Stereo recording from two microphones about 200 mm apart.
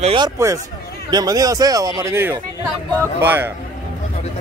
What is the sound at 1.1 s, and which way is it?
A man's voice, 20° right (ahead or behind).